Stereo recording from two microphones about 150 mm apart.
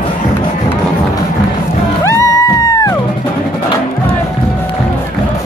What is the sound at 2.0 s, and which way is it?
Music, 20° left (ahead or behind).